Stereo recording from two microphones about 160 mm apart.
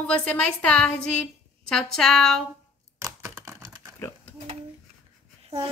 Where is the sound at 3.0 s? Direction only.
20° right (ahead or behind).